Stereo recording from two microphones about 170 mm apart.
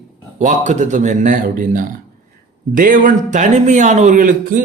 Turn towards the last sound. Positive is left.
turn(degrees=-55)  # may be behind; listen again after turning